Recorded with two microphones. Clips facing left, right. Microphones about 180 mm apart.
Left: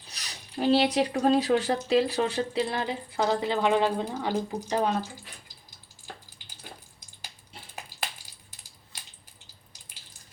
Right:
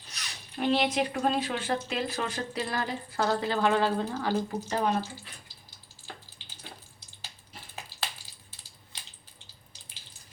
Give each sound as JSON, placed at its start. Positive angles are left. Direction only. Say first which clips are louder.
{"t": 0.1, "sound": "speech", "louder": "left 3 dB", "side_deg": 35}